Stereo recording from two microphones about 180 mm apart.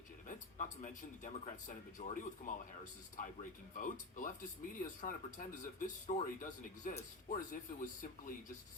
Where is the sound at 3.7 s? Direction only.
45° left (ahead or behind).